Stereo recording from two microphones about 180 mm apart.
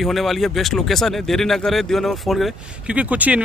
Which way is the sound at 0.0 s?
Centre (ahead or behind).